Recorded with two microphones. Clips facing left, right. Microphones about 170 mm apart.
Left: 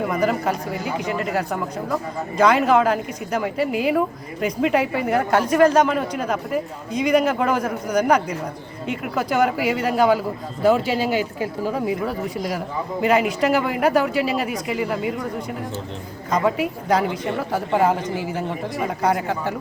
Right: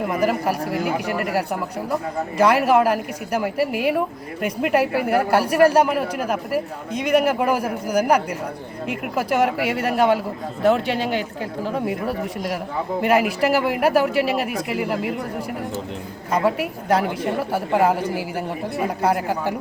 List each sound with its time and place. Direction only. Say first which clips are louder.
0.7 s speech: right 2 dB; 65° right (ahead or behind)
2.4 s a man's voice: even; 5° right (ahead or behind)
9.8 s speech: even; centre (ahead or behind)
16.3 s a man's voice: even; 5° right (ahead or behind)